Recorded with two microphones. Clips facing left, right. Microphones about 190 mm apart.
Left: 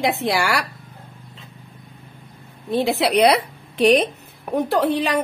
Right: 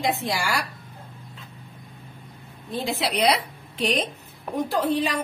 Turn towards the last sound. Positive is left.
turn(degrees=65)  # may be behind; listen again after turning